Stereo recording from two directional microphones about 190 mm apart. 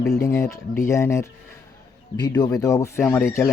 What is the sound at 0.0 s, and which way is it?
Speech, 15° left (ahead or behind).